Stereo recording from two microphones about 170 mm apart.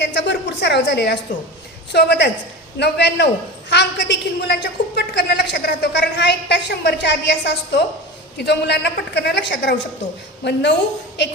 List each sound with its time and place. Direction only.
0.0 s a woman's voice: 90° left
1.9 s a woman's voice: 75° left (ahead or behind)